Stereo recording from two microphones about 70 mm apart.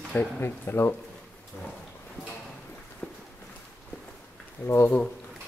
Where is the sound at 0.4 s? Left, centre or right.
Left.